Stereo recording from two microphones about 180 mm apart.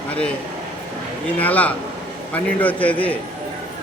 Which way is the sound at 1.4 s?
10° left (ahead or behind).